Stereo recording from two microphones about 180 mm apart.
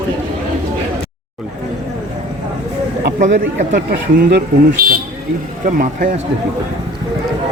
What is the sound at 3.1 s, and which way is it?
Speech, 45° right (ahead or behind).